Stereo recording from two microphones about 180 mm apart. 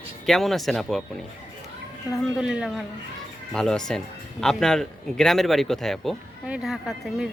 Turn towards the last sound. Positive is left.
turn(degrees=0)  # may be behind; listen again after turning